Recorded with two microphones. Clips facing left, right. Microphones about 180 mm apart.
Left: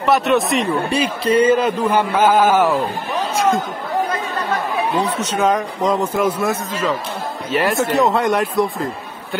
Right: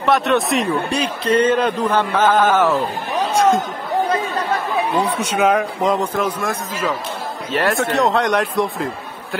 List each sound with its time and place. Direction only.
0.0 s a man's voice: centre (ahead or behind)
5.2 s speech: 10° right (ahead or behind)
6.1 s a man's voice: 5° left (ahead or behind)
6.7 s speech: 10° right (ahead or behind)